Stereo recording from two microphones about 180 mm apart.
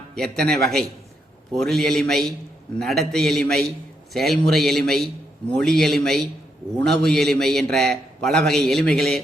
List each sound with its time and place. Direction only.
0.2 s a man's voice: 5° left (ahead or behind)